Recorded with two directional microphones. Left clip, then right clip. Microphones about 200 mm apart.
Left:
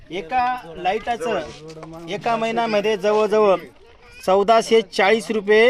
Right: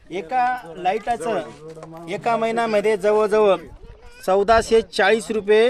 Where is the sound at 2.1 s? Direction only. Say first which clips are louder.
Even; 15° left (ahead or behind).